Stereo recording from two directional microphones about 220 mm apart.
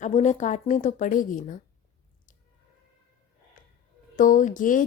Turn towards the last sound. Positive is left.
turn(degrees=35)  # may be behind; listen again after turning